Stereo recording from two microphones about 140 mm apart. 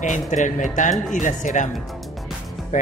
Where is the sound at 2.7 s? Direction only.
65° left (ahead or behind).